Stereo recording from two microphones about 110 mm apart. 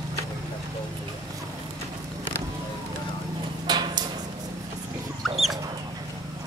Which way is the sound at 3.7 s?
40° right (ahead or behind).